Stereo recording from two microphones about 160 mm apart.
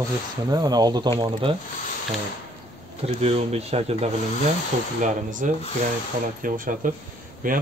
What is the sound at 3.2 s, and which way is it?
Speech, 40° right (ahead or behind).